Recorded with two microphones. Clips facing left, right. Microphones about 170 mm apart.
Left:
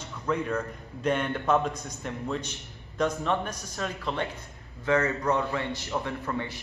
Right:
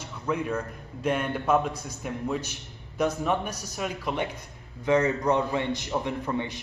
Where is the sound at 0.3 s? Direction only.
5° right (ahead or behind).